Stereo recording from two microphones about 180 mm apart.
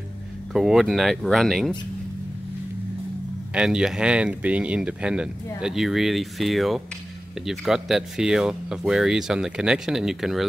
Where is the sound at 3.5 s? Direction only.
5° right (ahead or behind).